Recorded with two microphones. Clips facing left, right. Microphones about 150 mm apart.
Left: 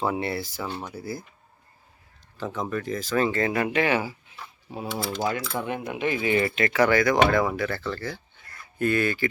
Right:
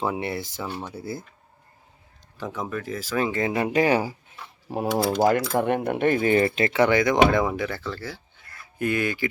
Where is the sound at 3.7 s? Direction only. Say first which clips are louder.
Right 3 dB; 40° right (ahead or behind).